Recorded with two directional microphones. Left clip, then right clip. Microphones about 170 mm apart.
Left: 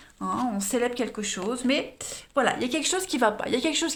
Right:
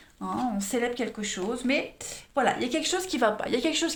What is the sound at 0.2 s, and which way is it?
Speech, 40° left (ahead or behind).